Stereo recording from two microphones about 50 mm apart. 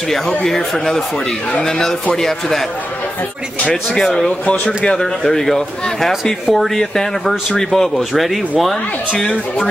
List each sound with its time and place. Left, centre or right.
0.5 s speech: centre
3.9 s speech: centre
9.1 s speech: centre